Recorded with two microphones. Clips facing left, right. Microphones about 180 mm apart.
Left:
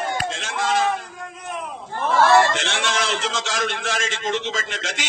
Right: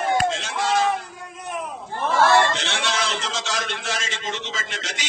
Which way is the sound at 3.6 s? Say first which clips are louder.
Left 4 dB; 50° left (ahead or behind).